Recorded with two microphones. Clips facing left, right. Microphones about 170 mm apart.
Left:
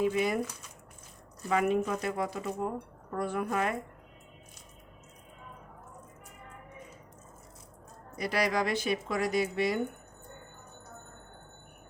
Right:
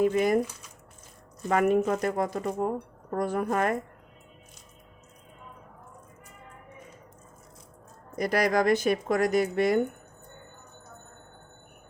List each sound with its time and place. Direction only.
0.0 s speech: 45° right (ahead or behind)
1.5 s speech: 50° right (ahead or behind)
8.1 s speech: 45° right (ahead or behind)